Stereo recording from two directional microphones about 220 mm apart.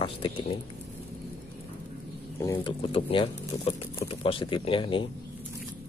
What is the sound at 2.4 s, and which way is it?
Speech, 20° left (ahead or behind).